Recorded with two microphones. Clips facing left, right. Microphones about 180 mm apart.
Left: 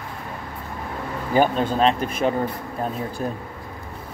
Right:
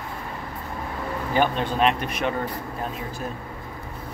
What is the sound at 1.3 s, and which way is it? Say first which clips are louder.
Speech: left 4 dB; 40° left (ahead or behind).